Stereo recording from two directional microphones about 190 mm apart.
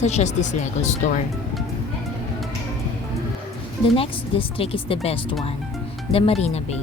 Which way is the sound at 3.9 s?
30° left (ahead or behind).